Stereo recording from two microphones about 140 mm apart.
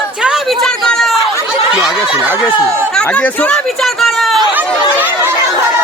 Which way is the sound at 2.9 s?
10° left (ahead or behind).